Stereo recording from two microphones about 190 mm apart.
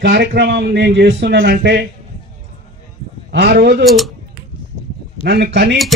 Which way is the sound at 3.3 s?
70° right (ahead or behind).